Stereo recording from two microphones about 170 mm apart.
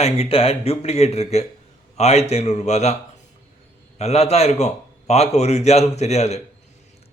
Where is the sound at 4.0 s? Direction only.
40° left (ahead or behind).